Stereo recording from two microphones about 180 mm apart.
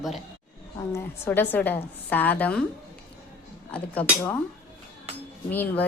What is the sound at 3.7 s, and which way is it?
Speech, 10° left (ahead or behind).